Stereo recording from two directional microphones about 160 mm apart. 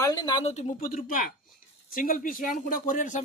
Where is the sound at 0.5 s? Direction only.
55° left (ahead or behind).